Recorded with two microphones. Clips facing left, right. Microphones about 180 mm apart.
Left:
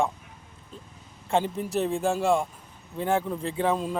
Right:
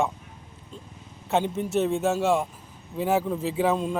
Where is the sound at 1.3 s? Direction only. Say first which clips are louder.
Right 1 dB; centre (ahead or behind).